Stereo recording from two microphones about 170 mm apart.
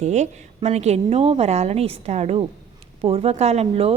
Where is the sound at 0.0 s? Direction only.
40° right (ahead or behind).